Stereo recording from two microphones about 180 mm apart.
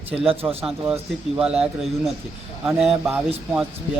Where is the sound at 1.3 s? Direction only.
5° right (ahead or behind).